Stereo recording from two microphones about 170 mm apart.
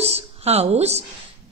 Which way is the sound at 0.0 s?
35° right (ahead or behind).